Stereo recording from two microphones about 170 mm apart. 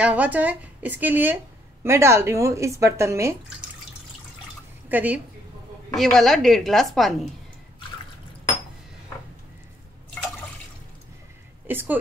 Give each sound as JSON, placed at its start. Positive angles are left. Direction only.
{"t": 0.0, "sound": "a woman's voice", "side_deg": -10}
{"t": 4.8, "sound": "a woman's voice", "side_deg": -10}
{"t": 5.9, "sound": "a woman's voice", "side_deg": 0}
{"t": 11.6, "sound": "speech", "side_deg": -10}